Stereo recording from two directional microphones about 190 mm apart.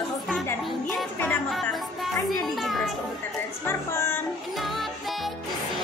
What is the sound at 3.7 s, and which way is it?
Speech, 10° left (ahead or behind).